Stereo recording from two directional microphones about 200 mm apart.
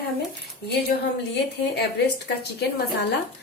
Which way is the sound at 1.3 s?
55° left (ahead or behind).